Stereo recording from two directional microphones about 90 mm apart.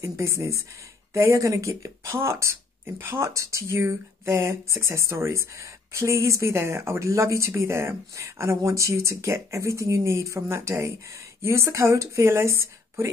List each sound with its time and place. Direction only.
0.0 s speech: 30° right (ahead or behind)